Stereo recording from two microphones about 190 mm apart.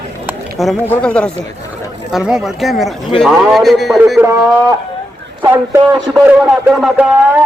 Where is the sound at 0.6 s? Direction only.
Centre (ahead or behind).